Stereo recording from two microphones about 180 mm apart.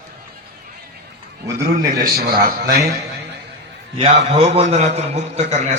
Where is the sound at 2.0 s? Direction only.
55° right (ahead or behind).